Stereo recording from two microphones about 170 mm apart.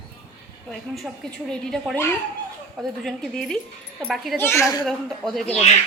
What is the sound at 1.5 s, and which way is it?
A woman's voice, centre (ahead or behind).